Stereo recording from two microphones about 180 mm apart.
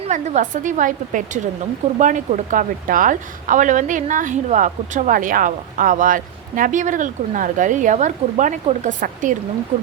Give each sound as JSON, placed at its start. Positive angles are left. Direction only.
{"t": 0.0, "sound": "speech", "side_deg": -40}